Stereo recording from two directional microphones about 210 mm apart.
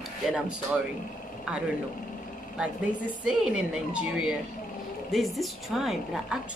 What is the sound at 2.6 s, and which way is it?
A woman's voice, 5° right (ahead or behind).